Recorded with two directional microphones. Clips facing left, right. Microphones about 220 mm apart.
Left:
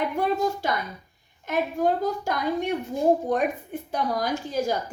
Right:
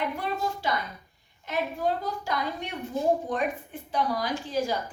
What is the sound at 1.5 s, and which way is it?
A woman's voice, 45° left (ahead or behind).